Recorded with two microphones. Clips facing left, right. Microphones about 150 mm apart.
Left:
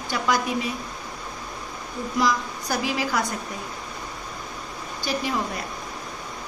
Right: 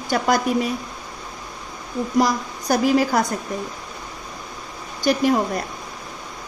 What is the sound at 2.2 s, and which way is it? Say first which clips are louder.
A woman's voice: right 4 dB; 40° right (ahead or behind).